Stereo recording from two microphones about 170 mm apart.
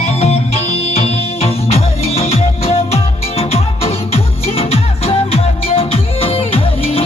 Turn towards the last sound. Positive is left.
turn(degrees=35)  # may be behind; listen again after turning